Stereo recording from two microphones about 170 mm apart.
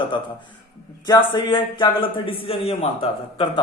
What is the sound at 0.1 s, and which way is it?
A man's voice, 30° left (ahead or behind).